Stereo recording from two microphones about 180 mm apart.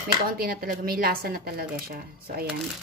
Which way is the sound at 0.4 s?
55° right (ahead or behind).